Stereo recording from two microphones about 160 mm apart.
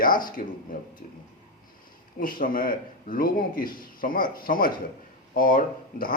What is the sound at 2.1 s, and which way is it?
Speech, 60° left (ahead or behind).